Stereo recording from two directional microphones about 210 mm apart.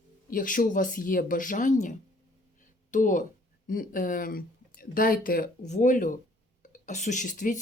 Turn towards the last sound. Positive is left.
turn(degrees=40)  # may be behind; listen again after turning